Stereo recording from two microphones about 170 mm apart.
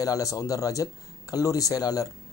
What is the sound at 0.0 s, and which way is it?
A man's voice, 20° left (ahead or behind).